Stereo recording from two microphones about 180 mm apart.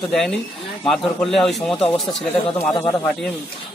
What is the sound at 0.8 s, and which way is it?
Speech, 5° left (ahead or behind).